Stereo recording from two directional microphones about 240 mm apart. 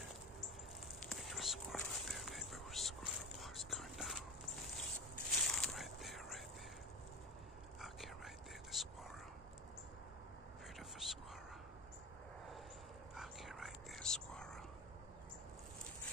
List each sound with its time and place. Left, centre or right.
1.0 s whispering: centre
5.4 s a sound: centre
8.7 s whispering: centre
10.8 s whispering: centre
13.1 s whispering: centre